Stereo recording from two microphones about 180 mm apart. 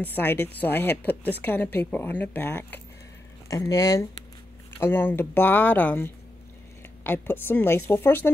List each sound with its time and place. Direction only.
0.0 s a woman's voice: 10° left (ahead or behind)